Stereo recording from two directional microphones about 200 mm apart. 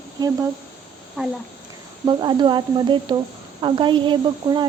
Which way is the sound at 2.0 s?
20° right (ahead or behind).